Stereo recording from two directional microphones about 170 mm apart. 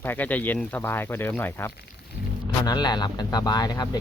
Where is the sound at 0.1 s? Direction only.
10° left (ahead or behind).